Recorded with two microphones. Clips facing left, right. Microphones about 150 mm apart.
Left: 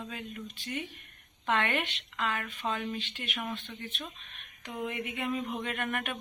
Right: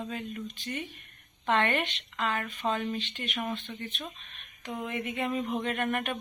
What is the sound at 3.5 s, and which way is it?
Speech, 20° right (ahead or behind).